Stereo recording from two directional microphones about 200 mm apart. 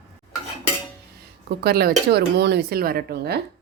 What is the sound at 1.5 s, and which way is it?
Speech, 50° right (ahead or behind).